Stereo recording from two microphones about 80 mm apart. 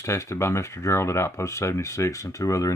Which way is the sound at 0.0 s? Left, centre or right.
Left.